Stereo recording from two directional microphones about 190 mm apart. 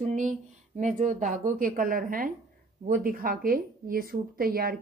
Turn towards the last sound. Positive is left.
turn(degrees=-50)  # may be behind; listen again after turning